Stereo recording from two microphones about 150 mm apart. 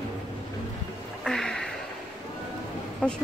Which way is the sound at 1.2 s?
5° left (ahead or behind).